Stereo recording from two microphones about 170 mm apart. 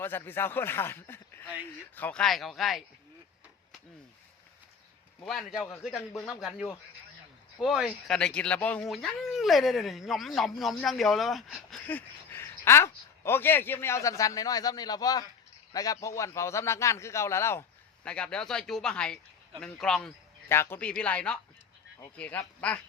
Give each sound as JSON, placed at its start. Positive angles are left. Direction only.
{"t": 0.3, "sound": "a man's voice", "side_deg": 15}
{"t": 5.2, "sound": "speech", "side_deg": 0}
{"t": 7.6, "sound": "a man's voice", "side_deg": -5}